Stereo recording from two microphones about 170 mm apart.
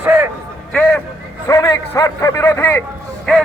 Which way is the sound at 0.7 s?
5° left (ahead or behind).